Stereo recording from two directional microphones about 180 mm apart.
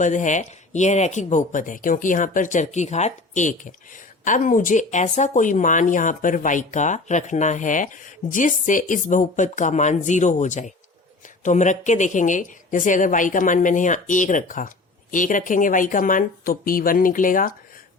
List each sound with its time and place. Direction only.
0.0 s speech: 45° left (ahead or behind)